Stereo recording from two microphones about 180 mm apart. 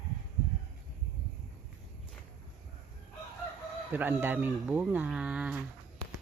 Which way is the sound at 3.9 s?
10° right (ahead or behind).